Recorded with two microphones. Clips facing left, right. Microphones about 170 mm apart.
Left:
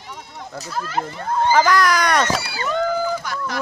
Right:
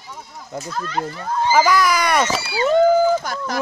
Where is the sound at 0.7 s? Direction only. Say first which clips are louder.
Even; 5° left (ahead or behind).